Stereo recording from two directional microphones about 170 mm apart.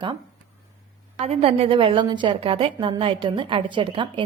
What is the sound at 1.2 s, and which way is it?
A woman's voice, 35° right (ahead or behind).